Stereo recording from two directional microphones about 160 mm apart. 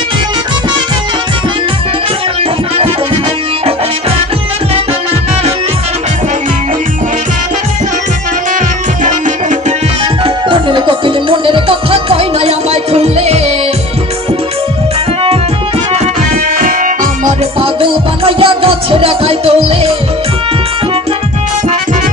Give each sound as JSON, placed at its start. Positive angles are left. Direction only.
{"t": 10.2, "sound": "music", "side_deg": -30}
{"t": 16.5, "sound": "music", "side_deg": -60}
{"t": 17.6, "sound": "music", "side_deg": -35}